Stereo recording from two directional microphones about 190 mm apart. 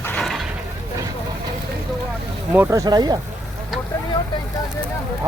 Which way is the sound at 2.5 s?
10° right (ahead or behind).